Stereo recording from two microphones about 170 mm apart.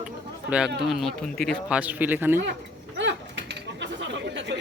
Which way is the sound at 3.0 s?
90° right.